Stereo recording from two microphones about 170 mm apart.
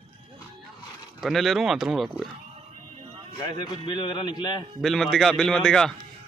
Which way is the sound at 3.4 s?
25° left (ahead or behind).